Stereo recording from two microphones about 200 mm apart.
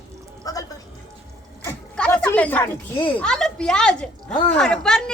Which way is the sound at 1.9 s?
5° left (ahead or behind).